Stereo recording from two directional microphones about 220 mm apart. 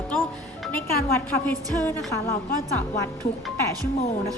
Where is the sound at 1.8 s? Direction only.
10° left (ahead or behind).